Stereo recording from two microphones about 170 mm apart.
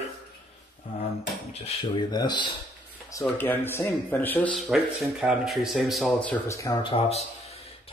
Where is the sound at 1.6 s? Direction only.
25° left (ahead or behind).